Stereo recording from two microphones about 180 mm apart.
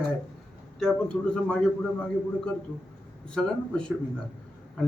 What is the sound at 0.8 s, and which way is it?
Speech, 5° left (ahead or behind).